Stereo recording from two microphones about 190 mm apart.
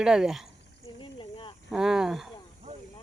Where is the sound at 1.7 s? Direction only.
Centre (ahead or behind).